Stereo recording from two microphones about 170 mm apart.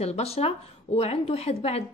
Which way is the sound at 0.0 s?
35° left (ahead or behind).